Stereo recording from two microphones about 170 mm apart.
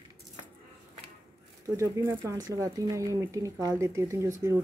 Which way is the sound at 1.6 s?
15° right (ahead or behind).